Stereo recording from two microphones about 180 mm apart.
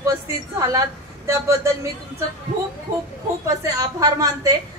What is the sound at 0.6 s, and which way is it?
A woman's voice, 20° right (ahead or behind).